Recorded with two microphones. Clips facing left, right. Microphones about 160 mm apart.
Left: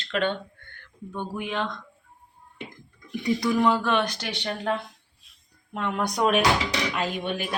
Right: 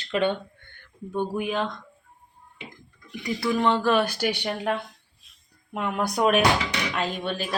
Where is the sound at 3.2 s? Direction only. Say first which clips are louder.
Left 2 dB; 15° left (ahead or behind).